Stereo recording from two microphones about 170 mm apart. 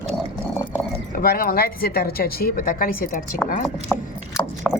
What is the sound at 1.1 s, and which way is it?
Speech, 60° left (ahead or behind).